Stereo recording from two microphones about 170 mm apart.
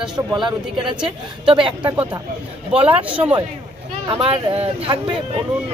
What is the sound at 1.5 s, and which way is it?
Speech, 30° right (ahead or behind).